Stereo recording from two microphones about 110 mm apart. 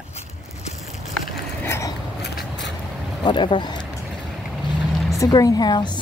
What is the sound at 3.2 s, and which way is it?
Speech, 45° left (ahead or behind).